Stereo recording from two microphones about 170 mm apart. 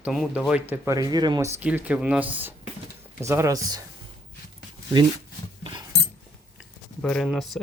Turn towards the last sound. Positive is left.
turn(degrees=0)  # may be behind; listen again after turning